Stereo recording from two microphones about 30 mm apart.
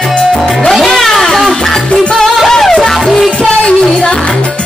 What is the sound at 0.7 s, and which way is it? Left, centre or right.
Music, centre.